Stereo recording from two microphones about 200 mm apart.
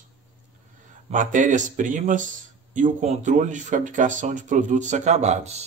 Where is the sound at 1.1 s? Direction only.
40° right (ahead or behind).